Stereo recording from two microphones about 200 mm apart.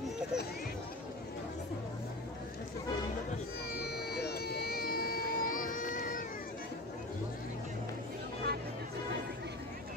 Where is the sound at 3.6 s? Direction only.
50° left (ahead or behind).